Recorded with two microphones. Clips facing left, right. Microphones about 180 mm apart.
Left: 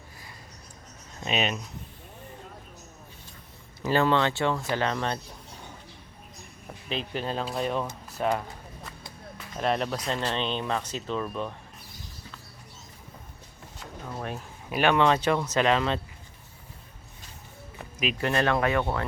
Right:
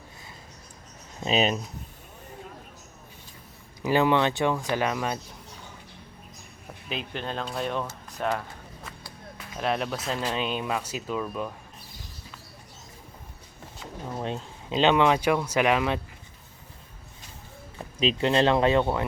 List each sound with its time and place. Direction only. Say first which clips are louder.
1.3 s speech: right 4 dB; 35° right (ahead or behind)
3.8 s speech: right 1 dB; 15° right (ahead or behind)
6.8 s speech: left 2 dB; centre (ahead or behind)
14.0 s speech: right 3 dB; 20° right (ahead or behind)
18.0 s speech: right 4 dB; 25° right (ahead or behind)